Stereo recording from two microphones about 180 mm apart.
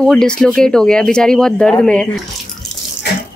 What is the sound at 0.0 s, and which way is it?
Speech, 5° left (ahead or behind).